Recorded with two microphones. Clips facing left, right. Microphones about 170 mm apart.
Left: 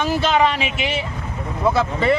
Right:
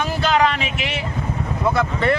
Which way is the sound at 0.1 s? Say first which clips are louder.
Left 1 dB; centre (ahead or behind).